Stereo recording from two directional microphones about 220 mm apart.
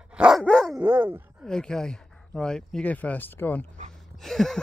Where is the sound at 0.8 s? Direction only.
10° right (ahead or behind).